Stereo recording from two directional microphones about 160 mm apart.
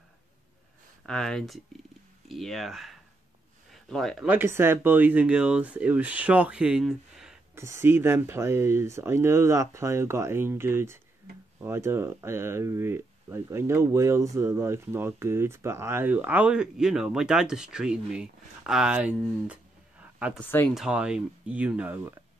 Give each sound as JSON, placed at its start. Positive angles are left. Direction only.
{"t": 1.0, "sound": "speech", "side_deg": 5}
{"t": 4.3, "sound": "speech", "side_deg": -15}
{"t": 7.5, "sound": "speech", "side_deg": -15}
{"t": 20.3, "sound": "speech", "side_deg": 15}
{"t": 20.7, "sound": "speech", "side_deg": -5}